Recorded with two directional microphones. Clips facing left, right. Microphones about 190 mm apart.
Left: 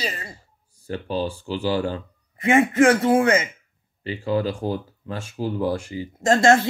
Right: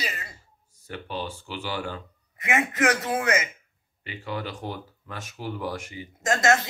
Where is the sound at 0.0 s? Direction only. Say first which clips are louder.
Left 5 dB; 35° left (ahead or behind).